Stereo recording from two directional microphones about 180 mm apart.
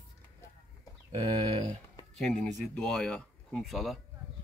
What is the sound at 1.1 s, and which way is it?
Speech, 20° right (ahead or behind).